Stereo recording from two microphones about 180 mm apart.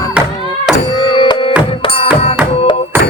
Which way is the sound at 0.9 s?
25° left (ahead or behind).